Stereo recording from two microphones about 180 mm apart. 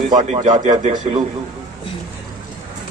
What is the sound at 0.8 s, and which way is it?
Speech, 35° right (ahead or behind).